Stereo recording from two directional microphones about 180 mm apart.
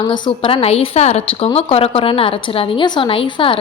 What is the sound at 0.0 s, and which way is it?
A woman's voice, 25° left (ahead or behind).